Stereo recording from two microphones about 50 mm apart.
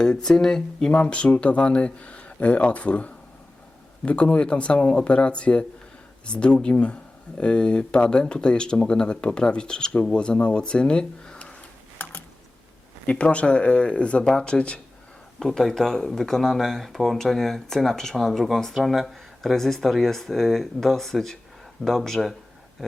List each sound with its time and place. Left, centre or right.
0.0 s speech: centre
12.0 s computer keyboard: left
13.1 s speech: left
15.4 s speech: centre